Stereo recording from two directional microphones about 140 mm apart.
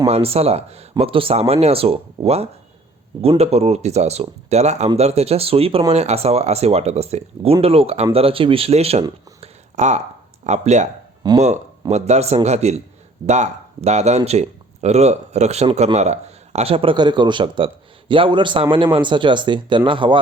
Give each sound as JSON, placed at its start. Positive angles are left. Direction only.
{"t": 0.1, "sound": "speech", "side_deg": -45}
{"t": 9.4, "sound": "a sound", "side_deg": -55}
{"t": 10.4, "sound": "speech", "side_deg": -55}